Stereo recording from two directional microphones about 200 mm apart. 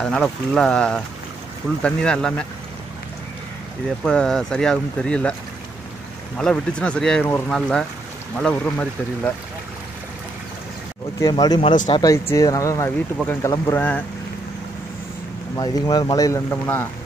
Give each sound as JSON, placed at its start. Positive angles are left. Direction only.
{"t": 0.0, "sound": "speech", "side_deg": 5}
{"t": 4.0, "sound": "speech", "side_deg": 5}
{"t": 6.3, "sound": "speech", "side_deg": 5}
{"t": 11.1, "sound": "speech", "side_deg": 20}
{"t": 15.5, "sound": "speech", "side_deg": 20}